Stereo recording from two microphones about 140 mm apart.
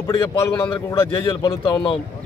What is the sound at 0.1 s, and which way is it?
A man's voice, 30° left (ahead or behind).